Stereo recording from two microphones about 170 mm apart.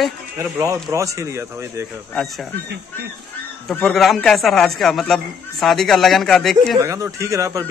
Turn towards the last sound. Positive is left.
turn(degrees=-20)  # may be behind; listen again after turning